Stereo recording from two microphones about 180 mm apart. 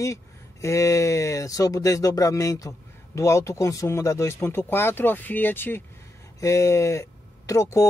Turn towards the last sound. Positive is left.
turn(degrees=15)  # may be behind; listen again after turning